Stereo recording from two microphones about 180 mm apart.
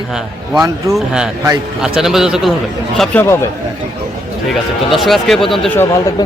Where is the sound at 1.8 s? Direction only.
5° right (ahead or behind).